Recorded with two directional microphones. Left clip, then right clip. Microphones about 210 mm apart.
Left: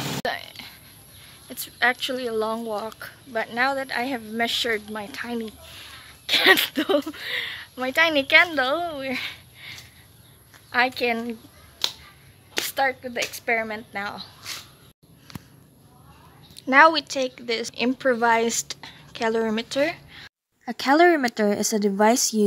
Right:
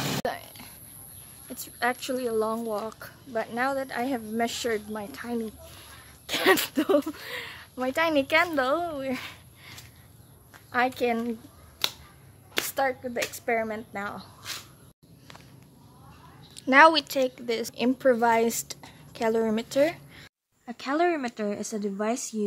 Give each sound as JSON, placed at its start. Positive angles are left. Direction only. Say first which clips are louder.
{"t": 0.2, "sound": "a sound", "louder": "left 3 dB", "side_deg": -5}
{"t": 1.5, "sound": "speech", "louder": "left 6 dB", "side_deg": -5}
{"t": 12.5, "sound": "speech", "louder": "left 3 dB", "side_deg": -10}
{"t": 16.5, "sound": "speech", "louder": "left 2 dB", "side_deg": -5}
{"t": 20.6, "sound": "a woman's voice", "louder": "left 8 dB", "side_deg": 30}